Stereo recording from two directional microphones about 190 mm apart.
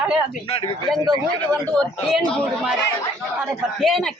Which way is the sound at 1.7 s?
5° left (ahead or behind).